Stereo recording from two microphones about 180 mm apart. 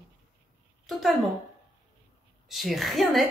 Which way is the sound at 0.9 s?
Centre (ahead or behind).